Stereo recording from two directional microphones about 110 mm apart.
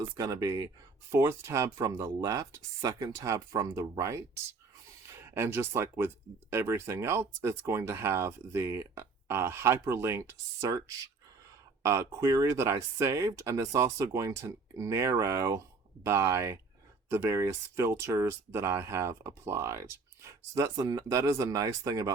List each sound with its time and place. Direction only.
0.2 s speech: 35° right (ahead or behind)